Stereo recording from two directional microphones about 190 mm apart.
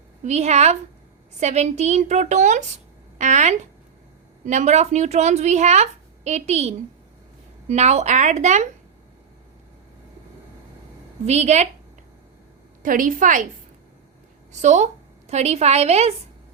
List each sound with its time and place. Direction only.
0.2 s a woman's voice: 35° right (ahead or behind)
11.3 s a woman's voice: 35° right (ahead or behind)
12.8 s a woman's voice: 45° right (ahead or behind)
14.5 s a woman's voice: 40° right (ahead or behind)